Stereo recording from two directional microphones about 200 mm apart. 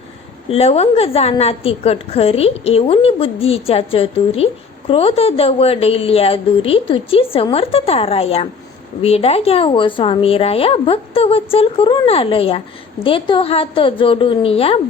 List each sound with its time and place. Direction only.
0.4 s speech: 30° left (ahead or behind)